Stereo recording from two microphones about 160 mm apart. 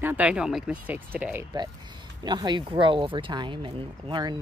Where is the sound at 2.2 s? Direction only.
25° right (ahead or behind).